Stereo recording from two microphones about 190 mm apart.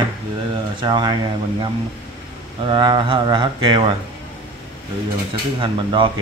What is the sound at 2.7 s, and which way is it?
Speech, 25° right (ahead or behind).